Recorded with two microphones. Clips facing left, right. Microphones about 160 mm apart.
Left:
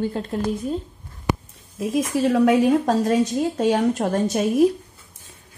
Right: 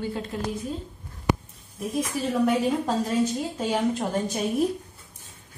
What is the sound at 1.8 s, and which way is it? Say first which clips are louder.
A woman's voice: left 7 dB; 90° left.